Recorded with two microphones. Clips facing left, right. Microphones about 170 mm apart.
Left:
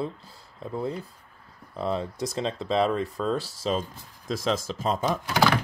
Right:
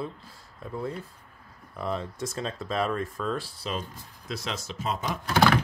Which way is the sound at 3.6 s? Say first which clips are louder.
Left 6 dB; 40° left (ahead or behind).